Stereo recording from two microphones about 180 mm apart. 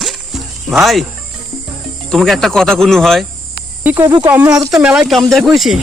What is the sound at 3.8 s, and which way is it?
Speech, 10° right (ahead or behind).